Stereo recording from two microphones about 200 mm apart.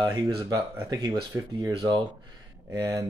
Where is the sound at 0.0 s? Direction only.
20° right (ahead or behind).